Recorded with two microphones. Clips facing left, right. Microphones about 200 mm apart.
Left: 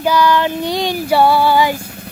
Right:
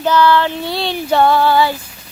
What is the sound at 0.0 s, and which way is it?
Child singing, 10° left (ahead or behind).